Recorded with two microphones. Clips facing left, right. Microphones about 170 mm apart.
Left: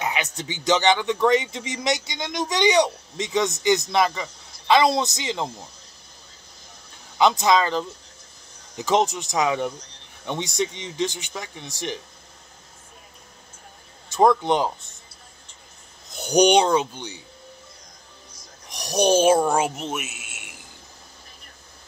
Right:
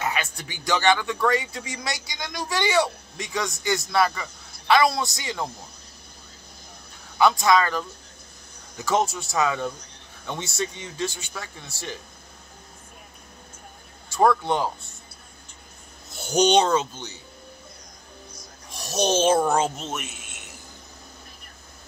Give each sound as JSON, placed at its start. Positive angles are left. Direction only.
{"t": 0.0, "sound": "speech", "side_deg": 20}
{"t": 7.2, "sound": "speech", "side_deg": 20}
{"t": 14.0, "sound": "a man's voice", "side_deg": 20}
{"t": 16.1, "sound": "speech", "side_deg": 15}
{"t": 18.7, "sound": "speech", "side_deg": 15}